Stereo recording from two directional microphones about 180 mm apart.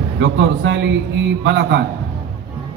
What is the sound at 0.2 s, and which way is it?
A man's voice, 85° right.